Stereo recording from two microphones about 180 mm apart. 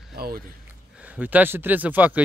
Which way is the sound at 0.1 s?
60° right (ahead or behind).